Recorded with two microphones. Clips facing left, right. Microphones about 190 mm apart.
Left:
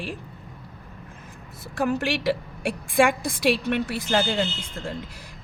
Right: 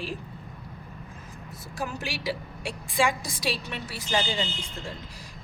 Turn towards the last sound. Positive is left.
turn(degrees=60)  # may be behind; listen again after turning